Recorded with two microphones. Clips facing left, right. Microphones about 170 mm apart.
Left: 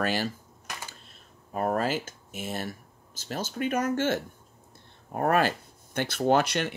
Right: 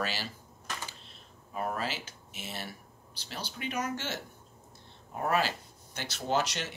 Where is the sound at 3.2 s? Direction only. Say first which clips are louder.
Left 9 dB; 45° left (ahead or behind).